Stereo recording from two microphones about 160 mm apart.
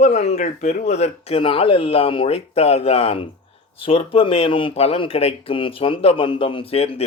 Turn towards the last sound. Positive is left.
turn(degrees=40)  # may be behind; listen again after turning